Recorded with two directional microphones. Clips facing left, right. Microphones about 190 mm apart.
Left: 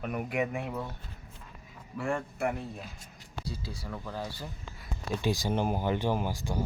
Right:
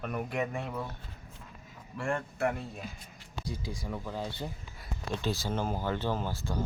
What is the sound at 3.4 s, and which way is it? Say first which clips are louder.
Speech: right 2 dB; 15° right (ahead or behind).